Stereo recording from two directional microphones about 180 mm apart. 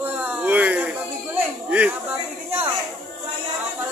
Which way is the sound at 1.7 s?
10° right (ahead or behind).